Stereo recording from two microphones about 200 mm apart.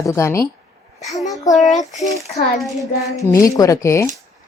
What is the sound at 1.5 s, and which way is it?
Speech, centre (ahead or behind).